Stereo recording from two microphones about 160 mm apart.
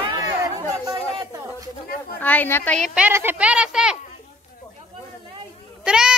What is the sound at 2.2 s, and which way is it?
Speech, 10° left (ahead or behind).